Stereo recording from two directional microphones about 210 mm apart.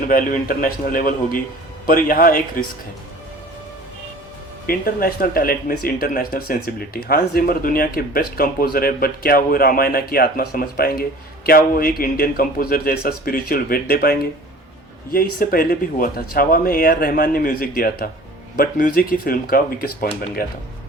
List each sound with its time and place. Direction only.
0.1 s a man's voice: 45° left (ahead or behind)
4.6 s speech: 45° left (ahead or behind)